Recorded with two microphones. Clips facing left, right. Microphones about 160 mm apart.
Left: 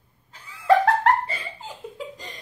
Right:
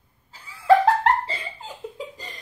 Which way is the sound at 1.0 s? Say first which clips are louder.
Left 1 dB; 25° right (ahead or behind).